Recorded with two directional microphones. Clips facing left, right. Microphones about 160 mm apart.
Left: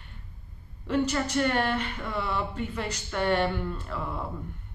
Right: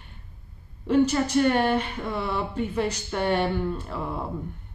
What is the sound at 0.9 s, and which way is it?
Speech, 15° right (ahead or behind).